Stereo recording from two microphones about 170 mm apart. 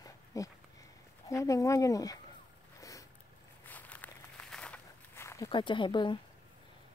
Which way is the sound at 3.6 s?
10° left (ahead or behind).